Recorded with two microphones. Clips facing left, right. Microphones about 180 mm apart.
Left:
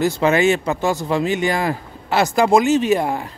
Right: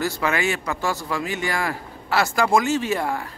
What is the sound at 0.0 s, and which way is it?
Speech, 20° left (ahead or behind).